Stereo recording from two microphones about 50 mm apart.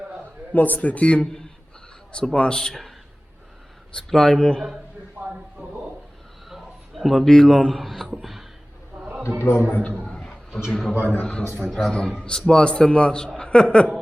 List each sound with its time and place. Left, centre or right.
0.5 s speech: left
2.3 s a man's voice: centre
3.9 s a man's voice: centre
5.2 s a sound: right
6.5 s a sound: centre
7.3 s speech: centre
8.2 s a sound: centre
9.4 s a man's voice: left
10.1 s a sound: centre
10.7 s a man's voice: centre
11.0 s speech: left
11.6 s speech: centre
12.2 s a man's voice: centre